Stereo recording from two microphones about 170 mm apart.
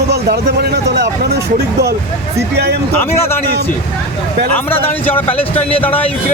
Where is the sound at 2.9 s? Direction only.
15° left (ahead or behind).